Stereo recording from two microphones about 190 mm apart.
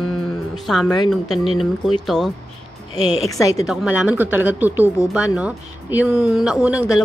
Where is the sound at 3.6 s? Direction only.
5° right (ahead or behind).